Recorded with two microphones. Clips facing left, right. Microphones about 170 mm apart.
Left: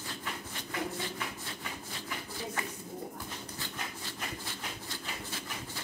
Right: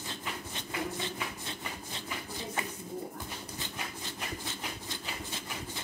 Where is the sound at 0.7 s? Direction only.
20° right (ahead or behind).